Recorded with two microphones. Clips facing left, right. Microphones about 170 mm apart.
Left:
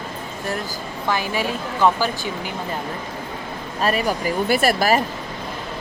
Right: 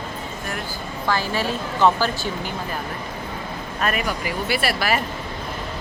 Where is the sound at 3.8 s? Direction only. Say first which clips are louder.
Left 4 dB; 35° left (ahead or behind).